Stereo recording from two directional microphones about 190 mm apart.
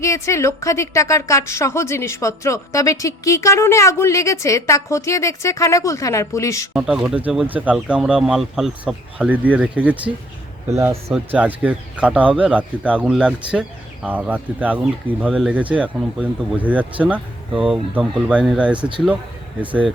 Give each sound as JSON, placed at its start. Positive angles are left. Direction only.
{"t": 0.0, "sound": "a woman's voice", "side_deg": 15}
{"t": 6.7, "sound": "speech", "side_deg": -5}